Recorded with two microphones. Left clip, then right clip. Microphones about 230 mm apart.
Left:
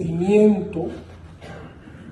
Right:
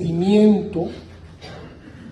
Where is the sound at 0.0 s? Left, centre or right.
Right.